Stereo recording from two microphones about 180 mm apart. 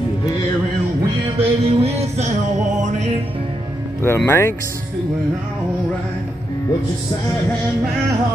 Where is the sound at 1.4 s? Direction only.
35° right (ahead or behind).